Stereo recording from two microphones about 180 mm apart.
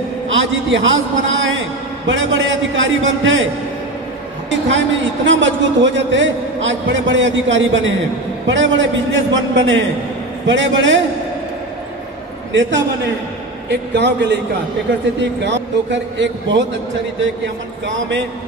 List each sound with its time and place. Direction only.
0.3 s a man's voice: 90° right
4.5 s a man's voice: 90° right
13.7 s a man's voice: 75° right (ahead or behind)
15.1 s a man's voice: 90° right
17.8 s a man's voice: 90° right